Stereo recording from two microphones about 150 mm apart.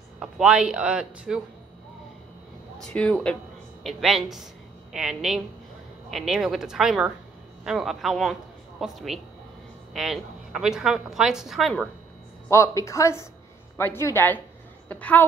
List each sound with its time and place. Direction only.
0.2 s speech: 5° right (ahead or behind)
2.8 s a woman's voice: 10° left (ahead or behind)
12.4 s a woman's voice: 20° left (ahead or behind)